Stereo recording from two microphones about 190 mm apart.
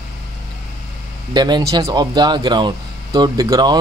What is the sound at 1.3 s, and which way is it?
Speech, 20° right (ahead or behind).